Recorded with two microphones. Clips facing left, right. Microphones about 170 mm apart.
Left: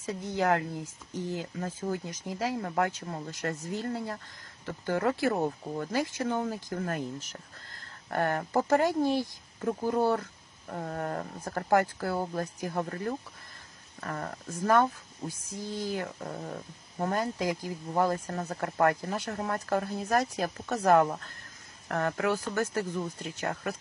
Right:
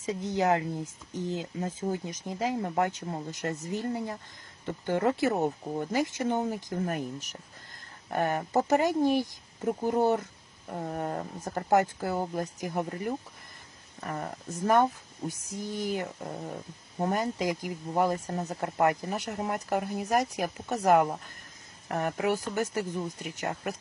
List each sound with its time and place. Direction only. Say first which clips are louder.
0.0 s speech: right 2 dB; 20° right (ahead or behind)